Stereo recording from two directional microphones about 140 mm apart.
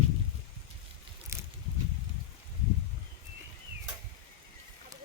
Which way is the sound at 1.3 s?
20° right (ahead or behind).